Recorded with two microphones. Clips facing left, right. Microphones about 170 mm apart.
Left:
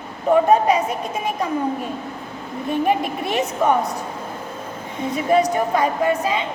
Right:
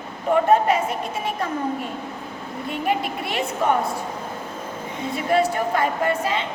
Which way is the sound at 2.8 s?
20° left (ahead or behind).